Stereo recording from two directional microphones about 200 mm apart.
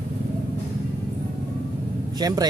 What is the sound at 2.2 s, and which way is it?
Speech, 20° right (ahead or behind).